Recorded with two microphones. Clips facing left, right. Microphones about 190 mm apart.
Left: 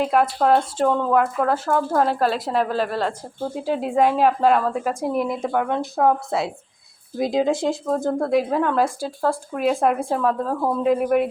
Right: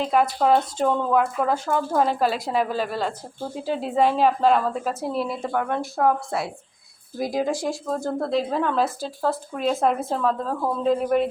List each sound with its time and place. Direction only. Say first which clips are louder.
0.0 s speech: left 2 dB; centre (ahead or behind)
3.6 s a woman's voice: left 2 dB; 10° left (ahead or behind)